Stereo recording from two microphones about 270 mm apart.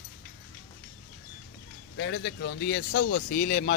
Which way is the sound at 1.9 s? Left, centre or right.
Left.